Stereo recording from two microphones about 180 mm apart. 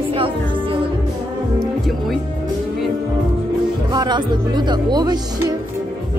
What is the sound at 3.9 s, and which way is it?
Speech, 25° right (ahead or behind).